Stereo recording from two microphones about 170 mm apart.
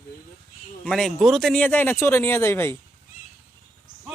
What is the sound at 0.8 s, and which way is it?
Speech, 5° left (ahead or behind).